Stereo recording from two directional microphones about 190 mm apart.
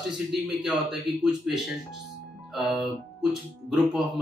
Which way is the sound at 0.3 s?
Centre (ahead or behind).